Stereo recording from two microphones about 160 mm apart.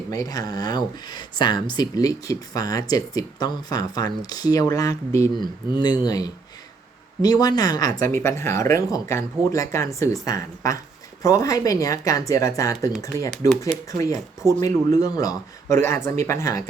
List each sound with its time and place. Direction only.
0.1 s speech: 20° left (ahead or behind)
14.4 s speech: 20° left (ahead or behind)